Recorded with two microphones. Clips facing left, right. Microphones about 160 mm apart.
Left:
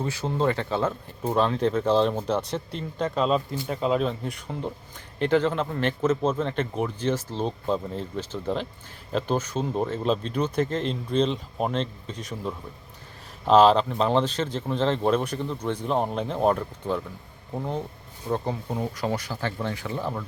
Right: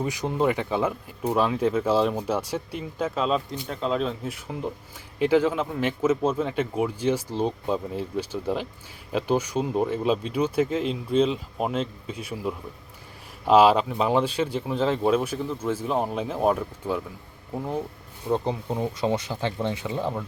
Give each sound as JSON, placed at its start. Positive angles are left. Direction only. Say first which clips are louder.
{"t": 0.0, "sound": "speech", "louder": "right 1 dB", "side_deg": -15}
{"t": 18.3, "sound": "speech", "louder": "right 2 dB", "side_deg": -20}